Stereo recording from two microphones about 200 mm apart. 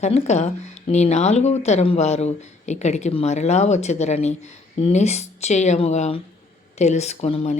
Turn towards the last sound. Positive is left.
turn(degrees=30)  # may be behind; listen again after turning